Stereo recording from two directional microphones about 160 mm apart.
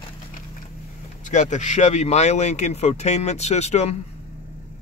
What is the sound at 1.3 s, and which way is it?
Speech, 50° left (ahead or behind).